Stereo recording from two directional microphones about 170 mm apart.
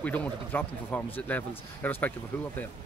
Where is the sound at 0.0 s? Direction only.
10° left (ahead or behind).